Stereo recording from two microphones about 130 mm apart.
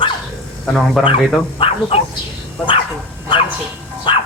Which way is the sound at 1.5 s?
45° left (ahead or behind).